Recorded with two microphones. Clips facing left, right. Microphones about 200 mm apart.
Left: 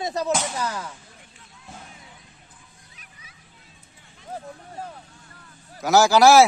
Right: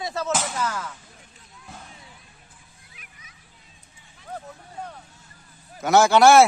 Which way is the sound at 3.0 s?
40° left (ahead or behind).